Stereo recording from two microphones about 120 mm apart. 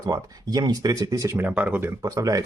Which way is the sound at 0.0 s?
30° right (ahead or behind).